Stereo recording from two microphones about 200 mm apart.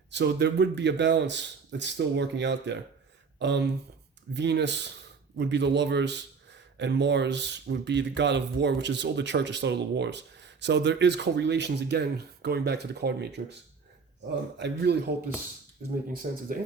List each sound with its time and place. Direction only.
0.1 s a man's voice: 60° right (ahead or behind)
15.8 s speech: 40° right (ahead or behind)
16.2 s speech: 55° right (ahead or behind)